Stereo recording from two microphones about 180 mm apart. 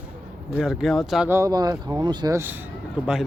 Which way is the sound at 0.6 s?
Centre (ahead or behind).